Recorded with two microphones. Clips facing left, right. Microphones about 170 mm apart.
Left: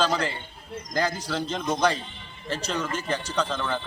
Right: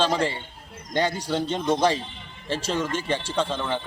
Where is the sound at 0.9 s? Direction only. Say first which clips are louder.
Right 3 dB; 30° right (ahead or behind).